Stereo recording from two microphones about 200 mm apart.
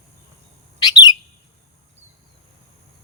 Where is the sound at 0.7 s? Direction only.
20° left (ahead or behind).